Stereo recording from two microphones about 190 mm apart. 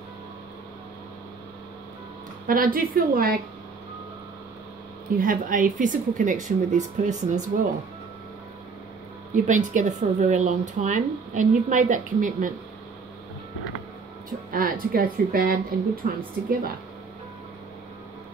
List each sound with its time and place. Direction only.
2.4 s speech: 50° right (ahead or behind)
5.1 s speech: 45° right (ahead or behind)
9.3 s speech: 40° right (ahead or behind)
14.5 s speech: 50° right (ahead or behind)